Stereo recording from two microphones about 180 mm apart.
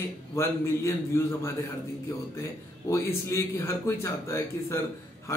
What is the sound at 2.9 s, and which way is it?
Speech, 15° left (ahead or behind).